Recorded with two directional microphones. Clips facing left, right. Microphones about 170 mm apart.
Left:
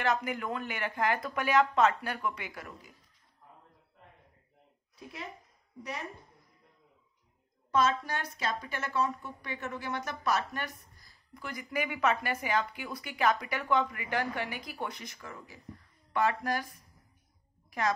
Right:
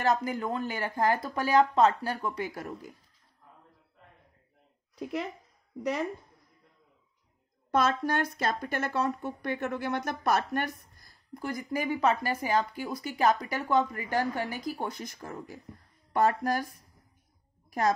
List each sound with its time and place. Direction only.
0.0 s speech: 35° right (ahead or behind)
7.7 s speech: 60° right (ahead or behind)
11.3 s speech: 40° right (ahead or behind)
17.6 s a sound: 40° right (ahead or behind)